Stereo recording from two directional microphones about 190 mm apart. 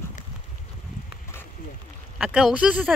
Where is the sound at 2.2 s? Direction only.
Centre (ahead or behind).